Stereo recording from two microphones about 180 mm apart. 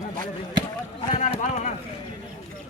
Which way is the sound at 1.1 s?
40° left (ahead or behind).